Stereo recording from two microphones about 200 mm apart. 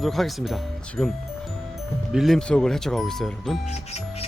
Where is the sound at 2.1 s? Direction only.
Centre (ahead or behind).